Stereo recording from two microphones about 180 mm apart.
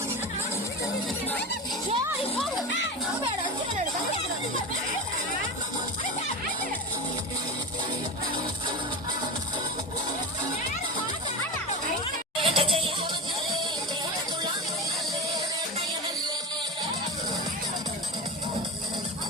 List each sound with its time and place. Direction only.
12.4 s music: 30° right (ahead or behind)